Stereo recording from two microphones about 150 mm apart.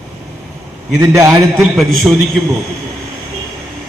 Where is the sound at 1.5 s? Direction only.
Centre (ahead or behind).